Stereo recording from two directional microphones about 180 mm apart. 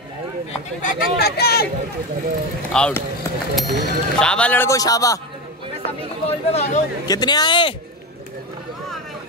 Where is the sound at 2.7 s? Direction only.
5° left (ahead or behind).